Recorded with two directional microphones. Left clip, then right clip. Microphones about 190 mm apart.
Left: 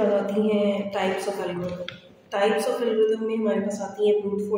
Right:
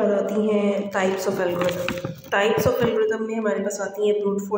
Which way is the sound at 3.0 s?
25° right (ahead or behind).